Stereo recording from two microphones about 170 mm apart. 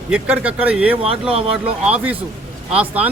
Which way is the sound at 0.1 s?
5° right (ahead or behind).